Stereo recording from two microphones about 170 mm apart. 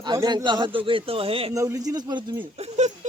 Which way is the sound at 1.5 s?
20° right (ahead or behind).